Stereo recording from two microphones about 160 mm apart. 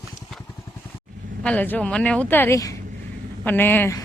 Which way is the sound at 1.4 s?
10° left (ahead or behind).